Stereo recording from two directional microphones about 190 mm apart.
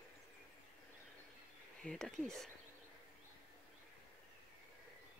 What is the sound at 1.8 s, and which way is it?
Speech, 5° left (ahead or behind).